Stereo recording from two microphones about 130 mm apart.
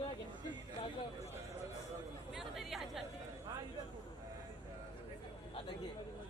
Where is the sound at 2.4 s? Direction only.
Centre (ahead or behind).